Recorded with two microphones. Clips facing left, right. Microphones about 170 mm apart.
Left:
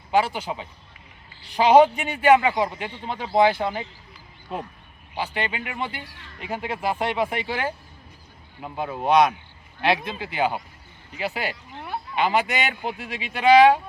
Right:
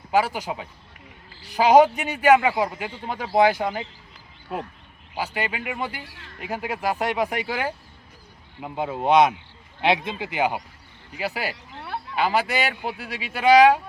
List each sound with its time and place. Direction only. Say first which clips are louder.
0.1 s speech: even; 10° right (ahead or behind)
5.1 s speech: even; 5° right (ahead or behind)
8.6 s speech: right 2 dB; 20° right (ahead or behind)
12.1 s speech: even; 5° right (ahead or behind)